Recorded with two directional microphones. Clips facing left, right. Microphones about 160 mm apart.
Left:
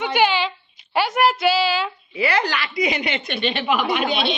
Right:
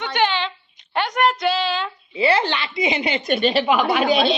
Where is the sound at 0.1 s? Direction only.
10° left (ahead or behind).